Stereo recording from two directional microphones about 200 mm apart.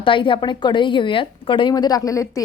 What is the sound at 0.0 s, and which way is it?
A woman's voice, 25° left (ahead or behind).